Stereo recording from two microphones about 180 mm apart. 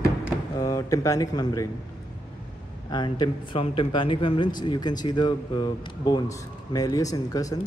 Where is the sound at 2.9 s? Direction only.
25° left (ahead or behind).